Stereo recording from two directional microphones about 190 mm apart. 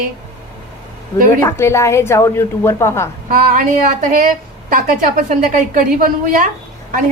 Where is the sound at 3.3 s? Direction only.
45° right (ahead or behind).